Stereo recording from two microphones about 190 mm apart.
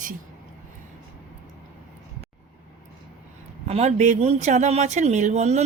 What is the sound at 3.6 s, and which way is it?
Speech, 35° right (ahead or behind).